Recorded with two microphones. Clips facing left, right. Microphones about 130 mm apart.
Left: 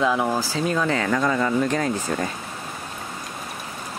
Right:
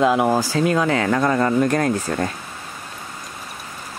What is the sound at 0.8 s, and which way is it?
Speech, 40° right (ahead or behind).